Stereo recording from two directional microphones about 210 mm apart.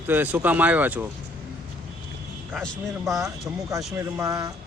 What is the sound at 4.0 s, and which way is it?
Speech, 15° right (ahead or behind).